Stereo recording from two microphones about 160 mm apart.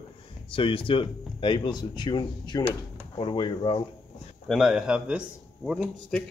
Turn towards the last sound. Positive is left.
turn(degrees=-5)  # may be behind; listen again after turning